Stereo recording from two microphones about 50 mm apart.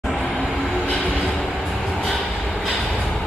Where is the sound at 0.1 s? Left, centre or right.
Left.